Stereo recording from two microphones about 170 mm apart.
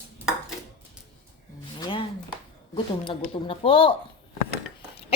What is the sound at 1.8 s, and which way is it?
Speech, 30° left (ahead or behind).